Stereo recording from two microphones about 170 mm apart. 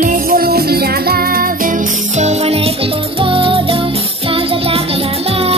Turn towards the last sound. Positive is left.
turn(degrees=-35)  # may be behind; listen again after turning